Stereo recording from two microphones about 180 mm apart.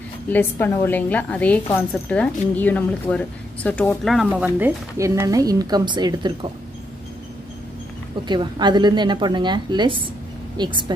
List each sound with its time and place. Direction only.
0.3 s a woman's voice: 10° left (ahead or behind); by 6.5 s 25° right (ahead or behind)
8.3 s a woman's voice: 25° right (ahead or behind)